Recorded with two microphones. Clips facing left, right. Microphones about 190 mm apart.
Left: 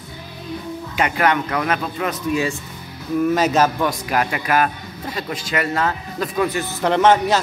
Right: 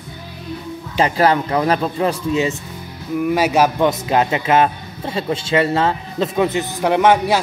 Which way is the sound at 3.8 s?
25° right (ahead or behind).